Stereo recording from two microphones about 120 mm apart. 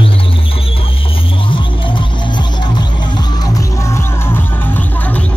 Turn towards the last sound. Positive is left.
turn(degrees=20)  # may be behind; listen again after turning